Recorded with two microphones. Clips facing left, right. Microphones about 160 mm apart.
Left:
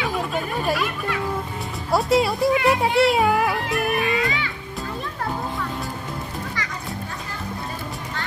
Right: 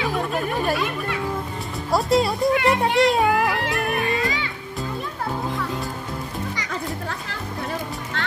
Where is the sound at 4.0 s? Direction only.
40° right (ahead or behind).